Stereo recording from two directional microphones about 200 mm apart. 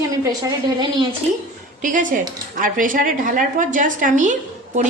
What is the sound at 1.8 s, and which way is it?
A woman's voice, 40° right (ahead or behind).